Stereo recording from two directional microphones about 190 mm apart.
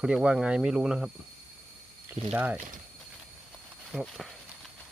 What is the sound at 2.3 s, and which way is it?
Speech, 10° right (ahead or behind).